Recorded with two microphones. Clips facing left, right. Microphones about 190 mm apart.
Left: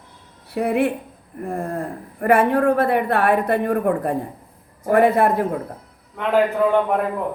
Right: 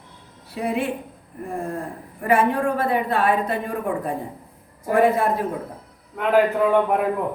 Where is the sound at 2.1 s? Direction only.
60° left (ahead or behind).